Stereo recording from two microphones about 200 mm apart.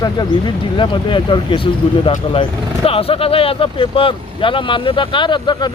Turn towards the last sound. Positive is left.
turn(degrees=20)  # may be behind; listen again after turning